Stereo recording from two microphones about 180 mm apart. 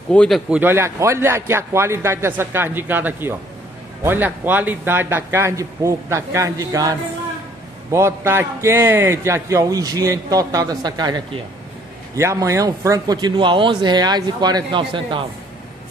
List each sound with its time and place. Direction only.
0.1 s a man's voice: 5° left (ahead or behind)
0.5 s a man's voice: 10° right (ahead or behind); by 15.2 s 30° right (ahead or behind)